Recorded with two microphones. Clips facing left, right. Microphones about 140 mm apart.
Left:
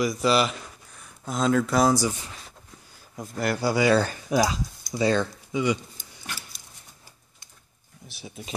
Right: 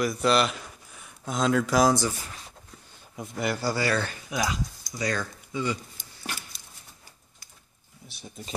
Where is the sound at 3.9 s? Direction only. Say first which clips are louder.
Left 7 dB; 35° left (ahead or behind).